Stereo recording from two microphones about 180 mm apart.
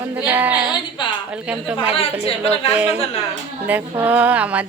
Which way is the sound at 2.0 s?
30° left (ahead or behind).